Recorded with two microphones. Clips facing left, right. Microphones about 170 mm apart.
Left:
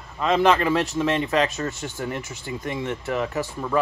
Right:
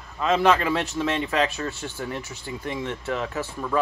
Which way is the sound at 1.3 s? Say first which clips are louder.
Left 2 dB; 40° left (ahead or behind).